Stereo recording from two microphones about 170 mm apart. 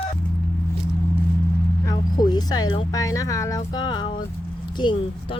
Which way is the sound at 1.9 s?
25° left (ahead or behind).